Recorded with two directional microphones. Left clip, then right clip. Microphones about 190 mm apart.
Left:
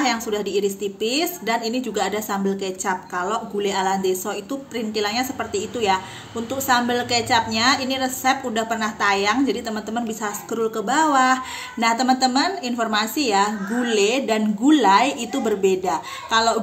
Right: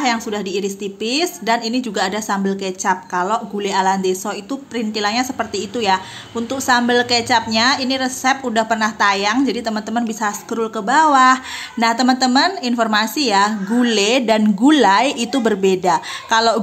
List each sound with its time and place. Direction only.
0.0 s a woman's voice: 35° right (ahead or behind)